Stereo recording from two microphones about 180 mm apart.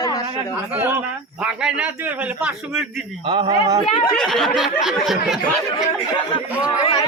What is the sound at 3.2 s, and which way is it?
Speech, 25° right (ahead or behind).